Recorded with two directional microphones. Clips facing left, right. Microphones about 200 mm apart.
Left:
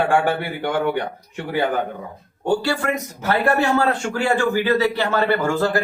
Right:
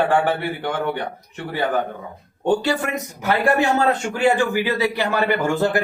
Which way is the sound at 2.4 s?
20° right (ahead or behind).